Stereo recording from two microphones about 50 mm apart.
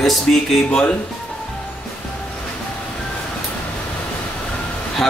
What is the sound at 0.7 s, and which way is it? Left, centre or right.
Speech, centre.